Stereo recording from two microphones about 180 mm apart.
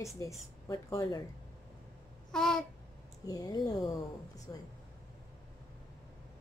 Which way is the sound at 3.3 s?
20° left (ahead or behind).